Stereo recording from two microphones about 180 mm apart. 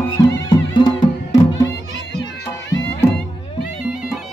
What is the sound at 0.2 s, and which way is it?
Music, 20° left (ahead or behind).